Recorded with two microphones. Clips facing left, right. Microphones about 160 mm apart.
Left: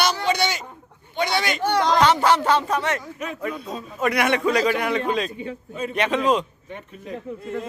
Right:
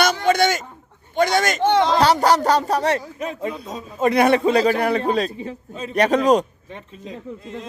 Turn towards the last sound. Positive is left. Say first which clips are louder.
# left 4 dB
turn(degrees=55)  # may be behind; listen again after turning